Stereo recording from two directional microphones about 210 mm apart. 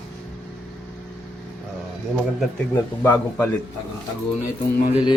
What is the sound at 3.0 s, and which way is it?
Speech, 10° left (ahead or behind).